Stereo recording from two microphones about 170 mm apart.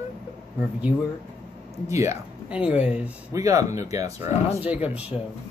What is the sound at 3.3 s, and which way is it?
Speech, 20° right (ahead or behind).